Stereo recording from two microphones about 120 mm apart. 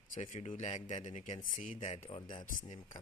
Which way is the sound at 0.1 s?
90° left.